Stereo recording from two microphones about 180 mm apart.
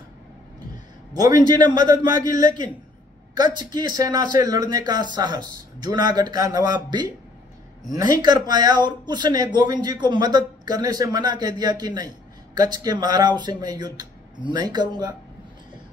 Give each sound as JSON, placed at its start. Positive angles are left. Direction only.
{"t": 1.1, "sound": "a man's voice", "side_deg": -20}